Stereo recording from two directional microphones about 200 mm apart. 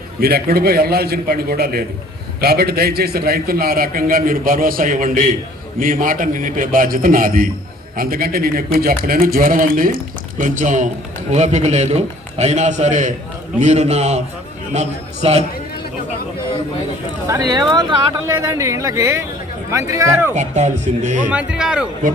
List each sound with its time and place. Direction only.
0.2 s a man's voice: 50° right (ahead or behind); by 15.4 s 35° right (ahead or behind)
17.2 s speech: 15° right (ahead or behind)
20.3 s a man's voice: 35° right (ahead or behind)
21.2 s speech: 5° right (ahead or behind)